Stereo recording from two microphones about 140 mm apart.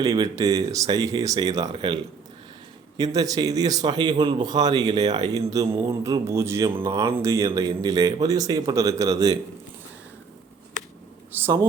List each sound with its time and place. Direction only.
0.0 s a man's voice: 25° right (ahead or behind)
3.0 s speech: 25° right (ahead or behind)
11.3 s speech: 15° right (ahead or behind)